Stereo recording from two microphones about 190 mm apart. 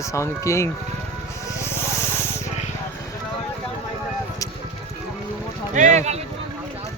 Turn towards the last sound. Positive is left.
turn(degrees=-35)  # may be behind; listen again after turning